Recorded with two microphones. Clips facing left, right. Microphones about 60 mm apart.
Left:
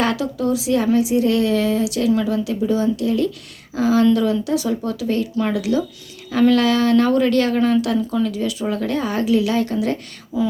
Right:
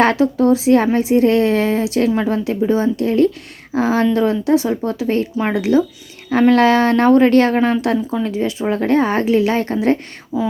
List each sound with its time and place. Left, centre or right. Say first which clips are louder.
0.0 s a woman's voice: right 7 dB; right
10.3 s speech: right 1 dB; right